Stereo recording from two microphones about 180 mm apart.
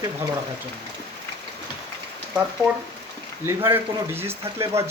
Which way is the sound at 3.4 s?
15° right (ahead or behind).